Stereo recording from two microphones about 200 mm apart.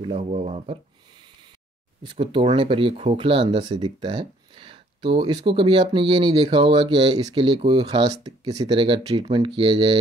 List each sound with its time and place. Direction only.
0.0 s speech: 30° right (ahead or behind)
2.0 s speech: 25° right (ahead or behind)